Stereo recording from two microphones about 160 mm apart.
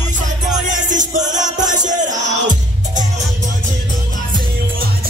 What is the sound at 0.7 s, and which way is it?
Music, 50° right (ahead or behind).